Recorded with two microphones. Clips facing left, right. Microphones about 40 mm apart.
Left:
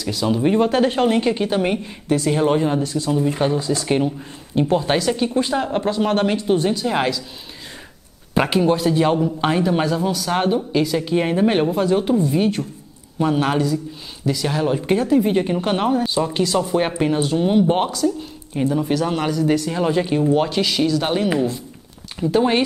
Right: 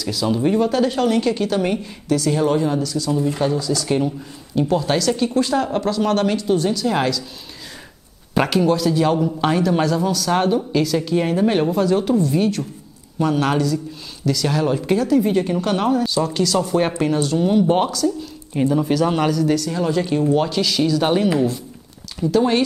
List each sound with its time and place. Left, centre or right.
0.0 s speech: centre
0.6 s a woman's voice: left; by 7.2 s centre
8.5 s a woman's voice: left
14.8 s a woman's voice: left
18.5 s speech: centre
19.3 s a woman's voice: left
20.8 s speech: centre
22.2 s a woman's voice: left